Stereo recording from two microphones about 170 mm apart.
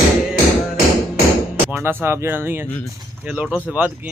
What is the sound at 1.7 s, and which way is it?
Speech, 10° right (ahead or behind).